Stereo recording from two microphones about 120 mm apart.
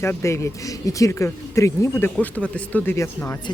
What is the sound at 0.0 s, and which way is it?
Speech, 20° left (ahead or behind).